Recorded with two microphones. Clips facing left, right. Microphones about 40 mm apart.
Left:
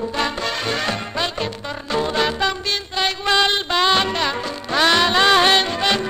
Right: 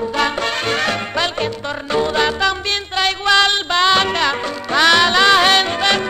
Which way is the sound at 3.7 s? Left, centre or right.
Centre.